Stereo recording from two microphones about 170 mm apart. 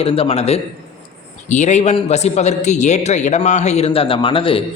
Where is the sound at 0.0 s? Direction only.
35° left (ahead or behind).